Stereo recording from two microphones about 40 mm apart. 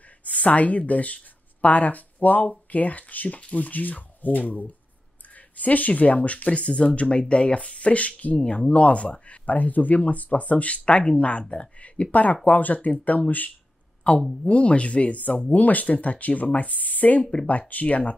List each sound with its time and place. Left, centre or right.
0.2 s speech: left
3.3 s speech: left
3.6 s speech: left
8.4 s speech: left
11.8 s speech: left
14.0 s speech: left
15.5 s speech: left